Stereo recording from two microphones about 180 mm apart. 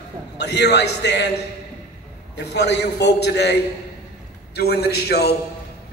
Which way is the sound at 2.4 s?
70° left (ahead or behind).